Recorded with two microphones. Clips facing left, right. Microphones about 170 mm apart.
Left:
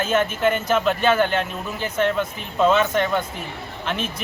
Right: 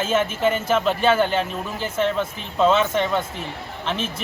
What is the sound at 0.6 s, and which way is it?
Speech, centre (ahead or behind).